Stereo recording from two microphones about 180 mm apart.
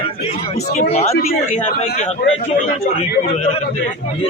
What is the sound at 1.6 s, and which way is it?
Speech, 35° left (ahead or behind).